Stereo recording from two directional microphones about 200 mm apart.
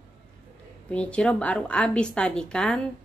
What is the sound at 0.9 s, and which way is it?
A woman's voice, 5° left (ahead or behind).